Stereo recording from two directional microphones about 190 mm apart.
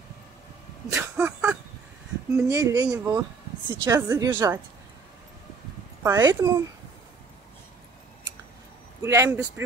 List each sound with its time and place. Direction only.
0.9 s a sound: 5° right (ahead or behind)
2.3 s speech: 15° right (ahead or behind)
6.0 s speech: 15° right (ahead or behind)
9.0 s speech: 15° right (ahead or behind)